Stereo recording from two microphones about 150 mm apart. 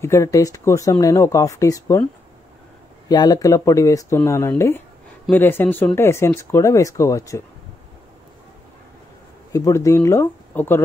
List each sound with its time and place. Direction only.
0.0 s speech: 20° left (ahead or behind)
3.1 s speech: 25° left (ahead or behind)
9.5 s speech: 20° left (ahead or behind)